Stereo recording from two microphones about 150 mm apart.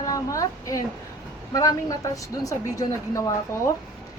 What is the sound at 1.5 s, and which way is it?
A woman's voice, 25° left (ahead or behind).